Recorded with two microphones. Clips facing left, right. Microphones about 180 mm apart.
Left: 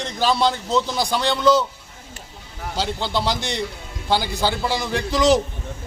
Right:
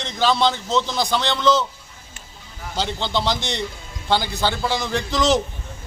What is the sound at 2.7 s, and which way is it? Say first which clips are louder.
A man's voice: even; 5° left (ahead or behind).